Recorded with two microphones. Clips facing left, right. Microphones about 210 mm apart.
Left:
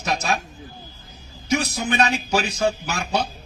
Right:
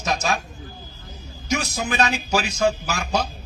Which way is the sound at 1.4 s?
35° left (ahead or behind).